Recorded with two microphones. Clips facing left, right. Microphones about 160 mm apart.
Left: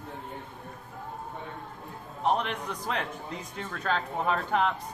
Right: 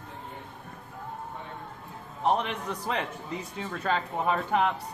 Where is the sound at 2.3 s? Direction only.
5° right (ahead or behind).